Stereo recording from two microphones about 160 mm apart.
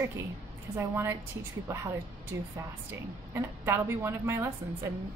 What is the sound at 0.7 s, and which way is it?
A woman's voice, 15° right (ahead or behind).